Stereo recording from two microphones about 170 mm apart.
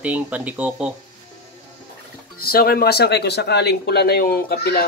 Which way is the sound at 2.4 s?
65° left (ahead or behind).